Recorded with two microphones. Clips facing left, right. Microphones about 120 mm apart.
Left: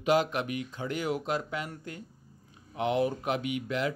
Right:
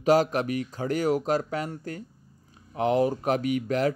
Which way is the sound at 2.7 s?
40° right (ahead or behind).